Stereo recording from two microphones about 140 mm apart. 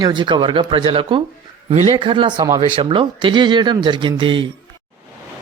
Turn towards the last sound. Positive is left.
turn(degrees=-35)  # may be behind; listen again after turning